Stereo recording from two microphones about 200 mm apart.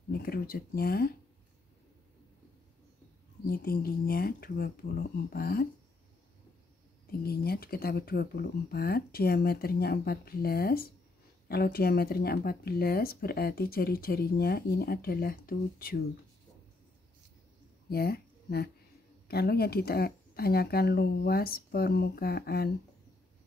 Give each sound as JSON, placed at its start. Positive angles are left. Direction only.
{"t": 0.1, "sound": "speech", "side_deg": 50}
{"t": 3.4, "sound": "speech", "side_deg": 50}
{"t": 7.1, "sound": "speech", "side_deg": 50}
{"t": 17.8, "sound": "a sound", "side_deg": 50}
{"t": 19.2, "sound": "speech", "side_deg": 50}